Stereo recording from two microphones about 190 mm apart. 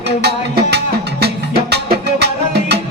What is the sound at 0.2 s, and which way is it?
Music, 60° right (ahead or behind).